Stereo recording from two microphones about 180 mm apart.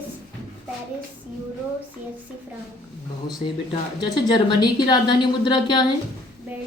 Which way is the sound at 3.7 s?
25° left (ahead or behind).